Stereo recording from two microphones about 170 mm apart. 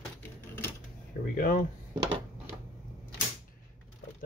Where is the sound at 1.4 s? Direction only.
55° left (ahead or behind).